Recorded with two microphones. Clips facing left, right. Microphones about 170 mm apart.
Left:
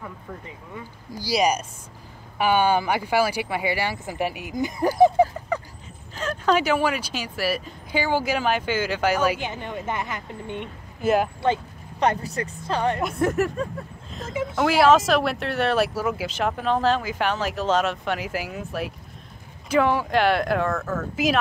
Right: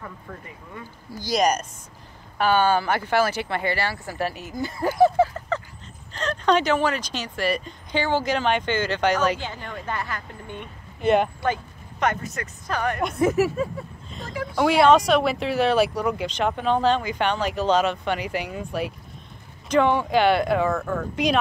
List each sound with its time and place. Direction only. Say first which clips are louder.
1.1 s speech: even; 10° left (ahead or behind)
9.5 s a woman's voice: left 2 dB; 20° left (ahead or behind)
11.0 s speech: right 1 dB; 5° left (ahead or behind)
11.4 s a woman's voice: left 2 dB; 30° left (ahead or behind)
13.2 s speech: right 3 dB; centre (ahead or behind)